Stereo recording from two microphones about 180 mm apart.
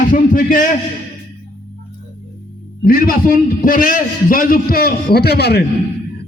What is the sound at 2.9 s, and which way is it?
A man's voice, 55° left (ahead or behind).